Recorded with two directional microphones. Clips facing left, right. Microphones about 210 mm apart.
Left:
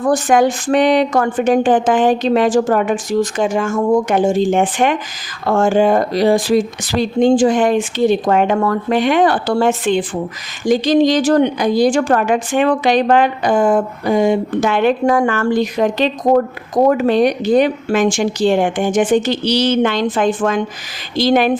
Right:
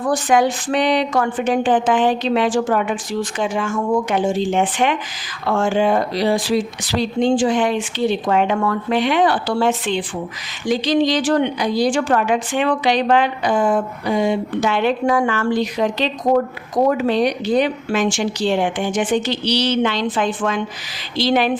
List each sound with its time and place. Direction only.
0.0 s a woman's voice: 45° left (ahead or behind)